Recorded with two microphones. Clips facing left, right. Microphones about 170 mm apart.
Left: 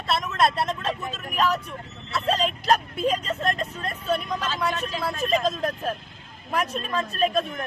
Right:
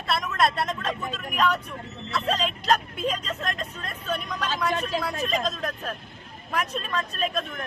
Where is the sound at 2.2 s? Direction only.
40° left (ahead or behind).